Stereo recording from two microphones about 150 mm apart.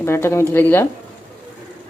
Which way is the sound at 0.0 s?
15° left (ahead or behind).